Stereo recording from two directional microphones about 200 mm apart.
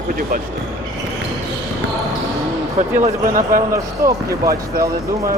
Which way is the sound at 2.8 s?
40° right (ahead or behind).